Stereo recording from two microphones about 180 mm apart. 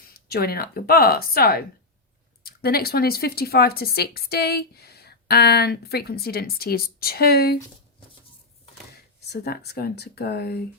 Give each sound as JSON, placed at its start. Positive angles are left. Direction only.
{"t": 0.3, "sound": "speech", "side_deg": 55}
{"t": 9.0, "sound": "speech", "side_deg": 60}